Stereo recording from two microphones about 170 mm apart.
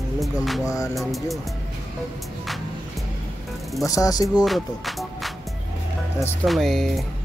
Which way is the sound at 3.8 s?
20° left (ahead or behind).